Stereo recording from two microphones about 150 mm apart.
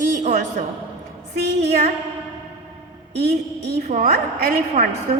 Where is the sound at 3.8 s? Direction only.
65° right (ahead or behind).